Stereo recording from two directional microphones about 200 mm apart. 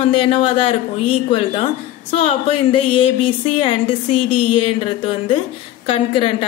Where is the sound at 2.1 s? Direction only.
30° left (ahead or behind).